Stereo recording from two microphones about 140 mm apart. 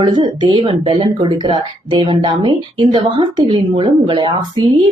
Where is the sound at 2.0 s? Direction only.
40° right (ahead or behind).